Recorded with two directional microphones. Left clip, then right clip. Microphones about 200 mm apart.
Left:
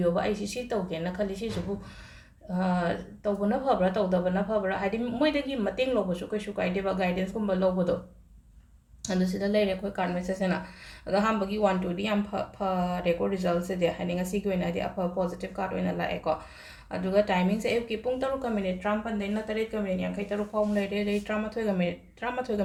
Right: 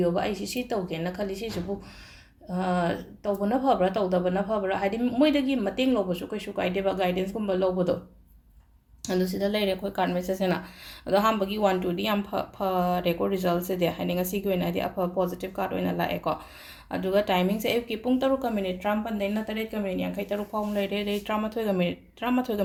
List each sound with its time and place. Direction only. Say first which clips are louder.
0.0 s a woman's voice: right 1 dB; 30° right (ahead or behind)
2.6 s a woman's voice: right 2 dB; 35° right (ahead or behind)
9.0 s a woman's voice: right 3 dB; 35° right (ahead or behind)